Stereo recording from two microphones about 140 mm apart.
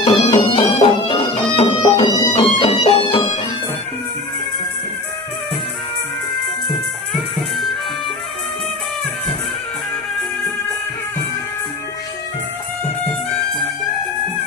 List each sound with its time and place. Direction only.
0.0 s music: 50° left (ahead or behind)
0.4 s music: 35° left (ahead or behind)
2.0 s music: 30° left (ahead or behind)
2.3 s music: 45° left (ahead or behind)